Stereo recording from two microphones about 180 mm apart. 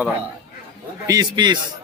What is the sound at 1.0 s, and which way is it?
Speech, 20° right (ahead or behind).